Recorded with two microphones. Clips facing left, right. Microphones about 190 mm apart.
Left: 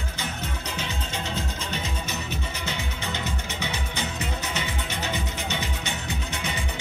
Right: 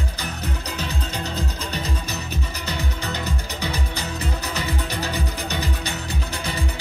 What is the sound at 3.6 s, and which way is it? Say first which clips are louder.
Music: right 2 dB; 35° right (ahead or behind).